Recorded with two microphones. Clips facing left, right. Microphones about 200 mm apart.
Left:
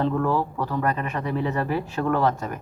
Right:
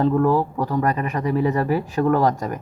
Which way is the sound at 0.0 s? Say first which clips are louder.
Right 5 dB; 35° right (ahead or behind).